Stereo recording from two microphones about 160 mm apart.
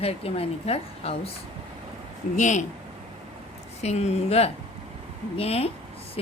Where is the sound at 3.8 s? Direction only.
45° left (ahead or behind).